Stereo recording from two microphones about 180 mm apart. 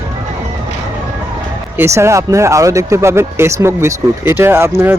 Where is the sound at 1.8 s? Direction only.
15° right (ahead or behind).